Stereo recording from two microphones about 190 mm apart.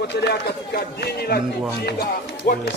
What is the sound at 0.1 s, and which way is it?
Speech, 60° left (ahead or behind).